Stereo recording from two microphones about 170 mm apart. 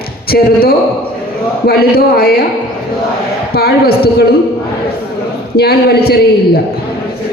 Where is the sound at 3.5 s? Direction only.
65° left (ahead or behind).